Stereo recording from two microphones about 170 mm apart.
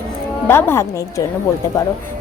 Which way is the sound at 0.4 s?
15° left (ahead or behind).